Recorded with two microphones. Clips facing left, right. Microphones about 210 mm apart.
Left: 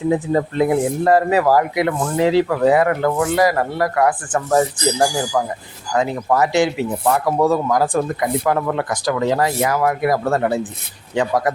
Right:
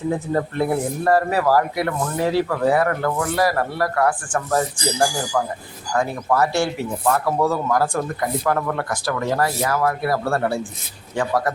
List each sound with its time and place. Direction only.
0.6 s speech: 15° left (ahead or behind)
2.0 s speech: 90° left
2.3 s speech: 20° left (ahead or behind)